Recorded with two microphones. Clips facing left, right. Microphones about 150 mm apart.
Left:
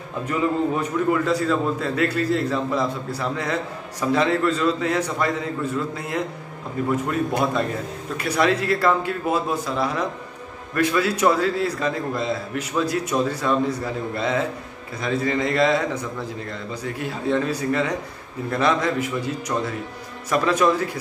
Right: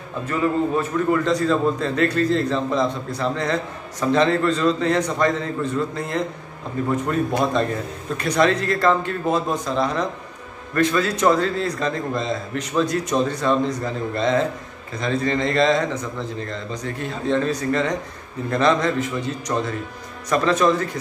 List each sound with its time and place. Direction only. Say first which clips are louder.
0.2 s a man's voice: right 1 dB; 20° left (ahead or behind)
1.1 s a man's voice: right 4 dB; 5° left (ahead or behind)